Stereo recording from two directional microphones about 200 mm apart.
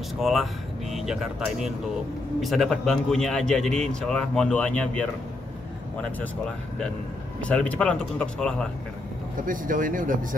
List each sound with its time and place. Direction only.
0.2 s speech: centre (ahead or behind)
2.4 s a man's voice: centre (ahead or behind)
7.4 s a man's voice: 5° left (ahead or behind)
9.5 s speech: 40° right (ahead or behind)